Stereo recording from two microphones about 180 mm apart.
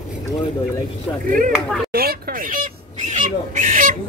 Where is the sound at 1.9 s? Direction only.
55° right (ahead or behind).